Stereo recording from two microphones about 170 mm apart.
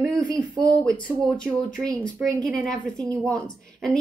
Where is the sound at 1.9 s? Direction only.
20° right (ahead or behind).